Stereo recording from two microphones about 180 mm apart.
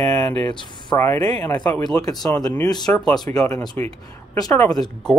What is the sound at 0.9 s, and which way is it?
Speech, 15° left (ahead or behind).